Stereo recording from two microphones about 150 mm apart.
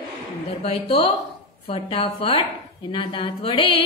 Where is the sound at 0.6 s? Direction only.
40° left (ahead or behind).